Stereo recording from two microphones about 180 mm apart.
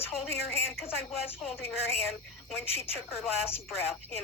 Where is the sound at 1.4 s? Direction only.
Centre (ahead or behind).